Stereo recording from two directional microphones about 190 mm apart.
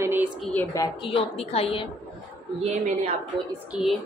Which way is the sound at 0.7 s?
20° left (ahead or behind).